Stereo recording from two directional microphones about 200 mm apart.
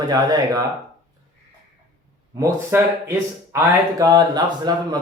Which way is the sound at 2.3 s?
15° right (ahead or behind).